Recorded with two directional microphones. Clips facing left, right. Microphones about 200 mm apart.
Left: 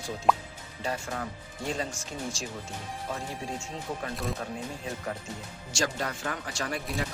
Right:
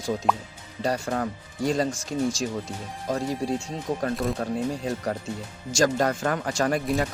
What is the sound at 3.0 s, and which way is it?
Speech, 40° right (ahead or behind).